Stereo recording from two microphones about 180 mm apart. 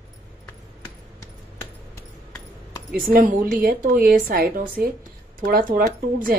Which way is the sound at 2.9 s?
50° right (ahead or behind).